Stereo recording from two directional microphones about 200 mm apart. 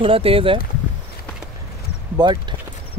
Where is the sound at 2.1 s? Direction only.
20° right (ahead or behind).